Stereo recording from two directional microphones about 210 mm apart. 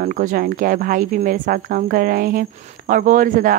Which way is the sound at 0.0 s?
40° right (ahead or behind).